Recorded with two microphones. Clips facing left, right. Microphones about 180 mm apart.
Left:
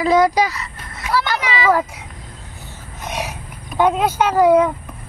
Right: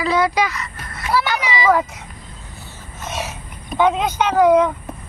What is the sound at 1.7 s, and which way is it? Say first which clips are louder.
Speech: right 1 dB; 10° left (ahead or behind).